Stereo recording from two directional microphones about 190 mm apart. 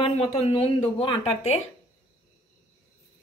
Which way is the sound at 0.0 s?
30° left (ahead or behind).